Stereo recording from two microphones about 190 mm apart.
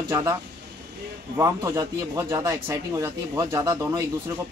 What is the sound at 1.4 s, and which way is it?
Speech, 15° right (ahead or behind).